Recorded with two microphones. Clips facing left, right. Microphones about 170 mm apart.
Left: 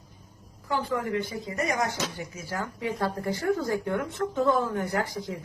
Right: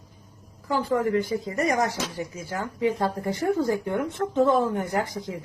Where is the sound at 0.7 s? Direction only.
35° right (ahead or behind).